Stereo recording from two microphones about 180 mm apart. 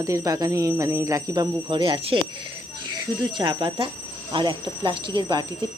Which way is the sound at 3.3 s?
30° right (ahead or behind).